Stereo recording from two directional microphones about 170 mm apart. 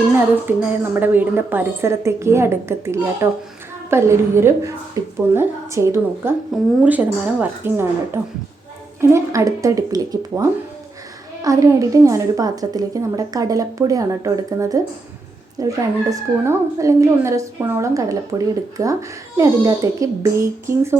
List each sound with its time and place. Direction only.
0.4 s a woman's voice: 10° right (ahead or behind)
11.4 s a woman's voice: 20° right (ahead or behind)
15.6 s a woman's voice: 20° right (ahead or behind)